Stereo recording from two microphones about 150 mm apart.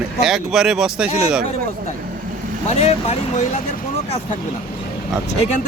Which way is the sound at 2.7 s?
45° left (ahead or behind).